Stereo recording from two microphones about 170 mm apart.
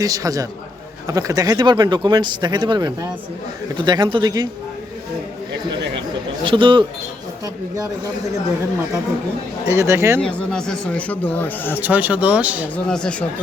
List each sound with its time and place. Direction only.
0.0 s speech: 20° right (ahead or behind)
6.4 s speech: 30° right (ahead or behind)
9.6 s speech: 15° right (ahead or behind)
10.2 s speech: 5° left (ahead or behind)
11.8 s speech: 10° right (ahead or behind)
12.7 s speech: 5° left (ahead or behind)